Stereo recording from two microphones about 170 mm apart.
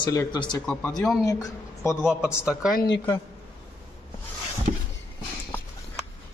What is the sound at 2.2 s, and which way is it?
Speech, 5° right (ahead or behind).